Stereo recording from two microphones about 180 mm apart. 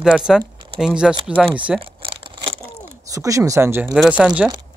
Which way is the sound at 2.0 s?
30° right (ahead or behind).